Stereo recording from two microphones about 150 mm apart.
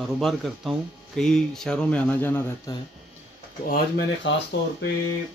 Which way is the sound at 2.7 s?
25° left (ahead or behind).